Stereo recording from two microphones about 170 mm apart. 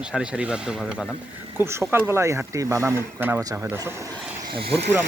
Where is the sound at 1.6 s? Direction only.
15° right (ahead or behind).